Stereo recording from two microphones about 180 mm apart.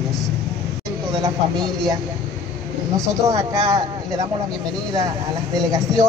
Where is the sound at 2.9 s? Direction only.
20° right (ahead or behind).